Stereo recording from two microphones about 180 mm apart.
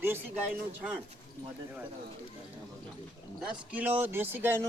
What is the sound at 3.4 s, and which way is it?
A man's voice, 5° right (ahead or behind).